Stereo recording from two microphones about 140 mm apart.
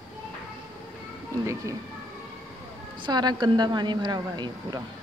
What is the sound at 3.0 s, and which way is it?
A woman's voice, 30° right (ahead or behind).